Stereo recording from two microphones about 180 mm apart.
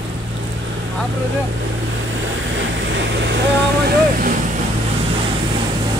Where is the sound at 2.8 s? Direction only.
80° right.